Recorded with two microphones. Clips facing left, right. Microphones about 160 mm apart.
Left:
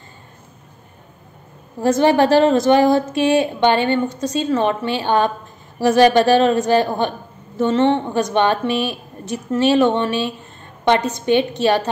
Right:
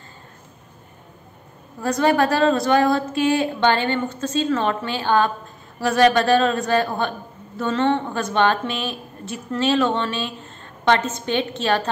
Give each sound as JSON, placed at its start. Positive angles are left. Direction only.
{"t": 1.8, "sound": "a woman's voice", "side_deg": 25}